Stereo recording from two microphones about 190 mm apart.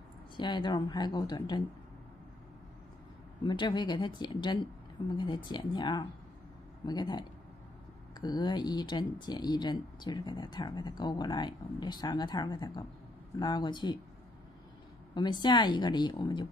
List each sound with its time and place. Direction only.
0.4 s speech: 25° left (ahead or behind)
3.4 s speech: 25° left (ahead or behind)
15.1 s speech: 20° left (ahead or behind)